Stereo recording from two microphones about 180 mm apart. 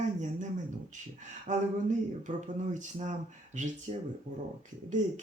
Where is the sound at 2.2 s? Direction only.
45° right (ahead or behind).